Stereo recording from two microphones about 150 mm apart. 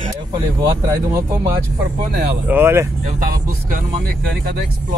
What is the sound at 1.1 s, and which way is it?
Speech, 20° right (ahead or behind).